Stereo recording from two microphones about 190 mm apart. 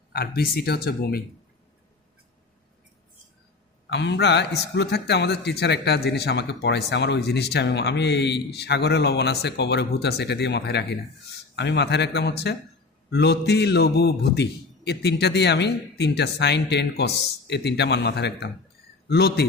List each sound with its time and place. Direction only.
0.1 s a man's voice: 55° left (ahead or behind)
3.8 s a man's voice: 65° left (ahead or behind)